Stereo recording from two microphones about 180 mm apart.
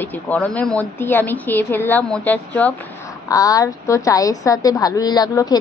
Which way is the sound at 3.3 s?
20° left (ahead or behind).